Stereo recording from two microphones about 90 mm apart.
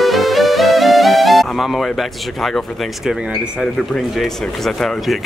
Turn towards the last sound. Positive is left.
turn(degrees=5)  # may be behind; listen again after turning